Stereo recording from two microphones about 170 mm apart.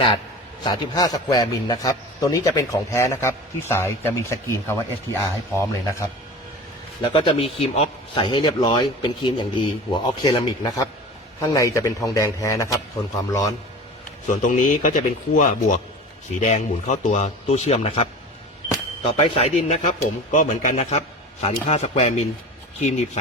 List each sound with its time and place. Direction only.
0.6 s a man's voice: 25° left (ahead or behind)
7.0 s a man's voice: 30° left (ahead or behind)
14.3 s speech: 50° left (ahead or behind)
19.1 s speech: 35° left (ahead or behind)